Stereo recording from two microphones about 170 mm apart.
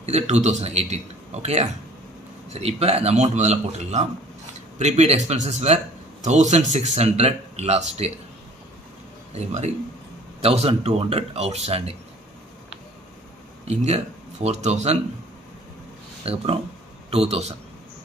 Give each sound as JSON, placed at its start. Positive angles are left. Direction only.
{"t": 0.0, "sound": "a man's voice", "side_deg": -40}
{"t": 9.3, "sound": "speech", "side_deg": -40}
{"t": 13.7, "sound": "speech", "side_deg": -40}
{"t": 16.3, "sound": "speech", "side_deg": -35}